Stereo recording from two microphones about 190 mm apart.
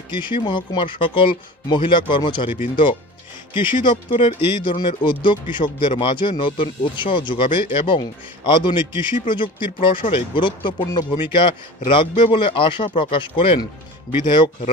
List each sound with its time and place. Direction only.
0.1 s speech: 25° left (ahead or behind)